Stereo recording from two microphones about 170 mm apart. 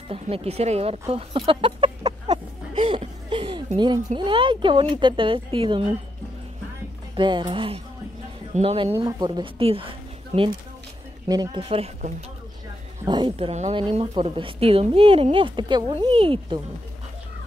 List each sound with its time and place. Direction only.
0.1 s speech: 35° right (ahead or behind)
2.9 s chuckle: 30° right (ahead or behind)
3.7 s speech: 25° right (ahead or behind)
7.2 s speech: 30° right (ahead or behind)